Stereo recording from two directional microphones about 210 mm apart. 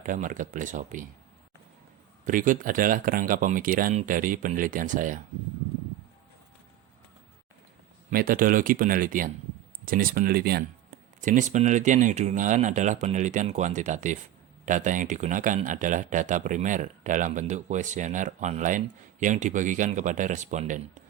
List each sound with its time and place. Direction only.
0.0 s speech: 40° right (ahead or behind)
2.2 s speech: 40° right (ahead or behind)
8.1 s speech: 45° right (ahead or behind)